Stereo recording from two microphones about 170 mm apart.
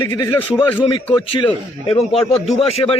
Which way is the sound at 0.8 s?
35° left (ahead or behind).